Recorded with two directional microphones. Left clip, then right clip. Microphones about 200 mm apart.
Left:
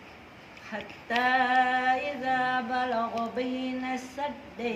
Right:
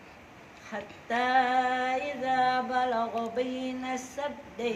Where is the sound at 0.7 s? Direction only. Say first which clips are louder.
Left 1 dB; 25° left (ahead or behind).